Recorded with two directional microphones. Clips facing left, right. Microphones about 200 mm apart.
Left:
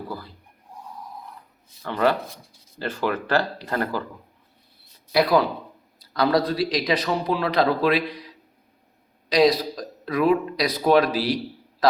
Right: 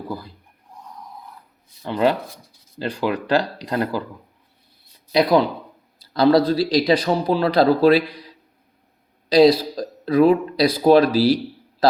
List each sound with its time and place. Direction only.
0.1 s speech: 15° right (ahead or behind)
1.8 s speech: 15° right (ahead or behind)
5.1 s a man's voice: 20° right (ahead or behind)
9.3 s a man's voice: 30° right (ahead or behind)